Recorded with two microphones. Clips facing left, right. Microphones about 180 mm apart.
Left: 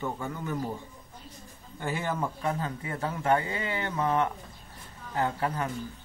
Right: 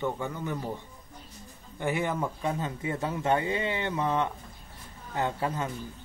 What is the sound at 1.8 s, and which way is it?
Speech, 20° right (ahead or behind).